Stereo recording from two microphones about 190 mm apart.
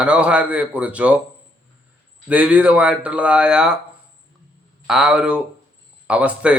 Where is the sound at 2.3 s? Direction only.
10° right (ahead or behind).